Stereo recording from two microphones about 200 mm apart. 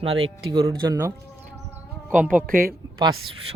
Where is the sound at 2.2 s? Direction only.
45° right (ahead or behind).